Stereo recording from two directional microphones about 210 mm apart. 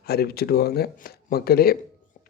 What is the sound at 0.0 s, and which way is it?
A man's voice, 45° left (ahead or behind).